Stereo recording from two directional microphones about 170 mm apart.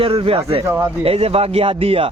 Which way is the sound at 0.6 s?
15° right (ahead or behind).